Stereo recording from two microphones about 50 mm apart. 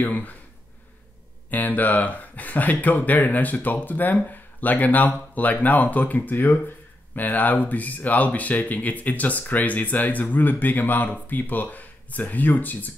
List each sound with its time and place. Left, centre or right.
0.0 s speech: left
1.5 s speech: left